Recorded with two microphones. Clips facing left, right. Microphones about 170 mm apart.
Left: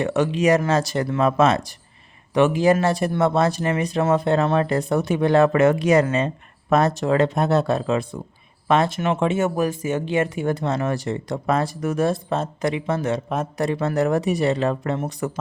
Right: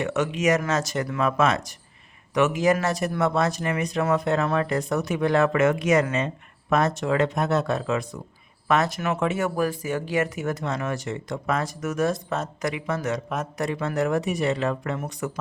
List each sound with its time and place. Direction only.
0.0 s speech: 35° left (ahead or behind)